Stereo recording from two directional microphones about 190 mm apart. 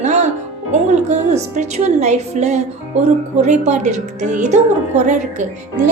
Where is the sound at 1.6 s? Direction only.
35° right (ahead or behind).